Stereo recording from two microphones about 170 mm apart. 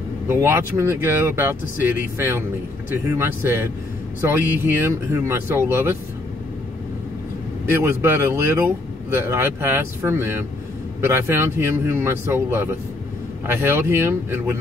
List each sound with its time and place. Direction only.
0.3 s speech: 15° right (ahead or behind)
7.6 s speech: 15° right (ahead or behind)